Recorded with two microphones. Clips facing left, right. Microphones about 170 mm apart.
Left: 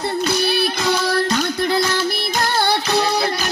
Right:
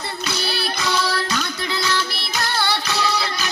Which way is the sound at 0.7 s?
50° left (ahead or behind).